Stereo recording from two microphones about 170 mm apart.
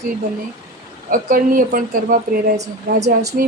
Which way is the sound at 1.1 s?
55° right (ahead or behind).